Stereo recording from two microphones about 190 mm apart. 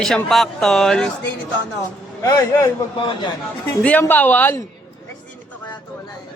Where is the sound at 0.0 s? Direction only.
Centre (ahead or behind).